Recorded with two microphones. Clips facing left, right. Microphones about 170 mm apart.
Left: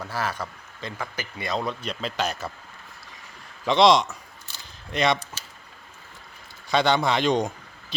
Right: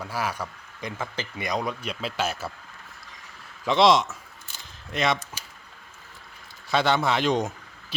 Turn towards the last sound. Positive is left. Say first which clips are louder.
# left 1 dB
turn(degrees=-5)  # may be behind; listen again after turning